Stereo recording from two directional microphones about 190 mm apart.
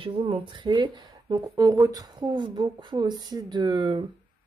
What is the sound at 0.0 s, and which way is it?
Speech, 25° right (ahead or behind).